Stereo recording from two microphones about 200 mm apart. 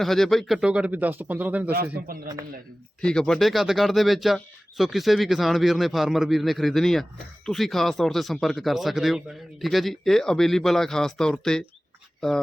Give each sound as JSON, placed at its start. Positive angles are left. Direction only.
{"t": 0.0, "sound": "speech", "side_deg": 0}
{"t": 1.7, "sound": "a man's voice", "side_deg": -50}
{"t": 3.0, "sound": "speech", "side_deg": 5}